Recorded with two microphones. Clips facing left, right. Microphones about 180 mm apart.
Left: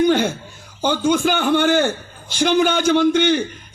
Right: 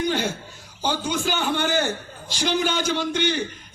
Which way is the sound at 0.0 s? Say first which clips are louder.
Left 8 dB; 55° left (ahead or behind).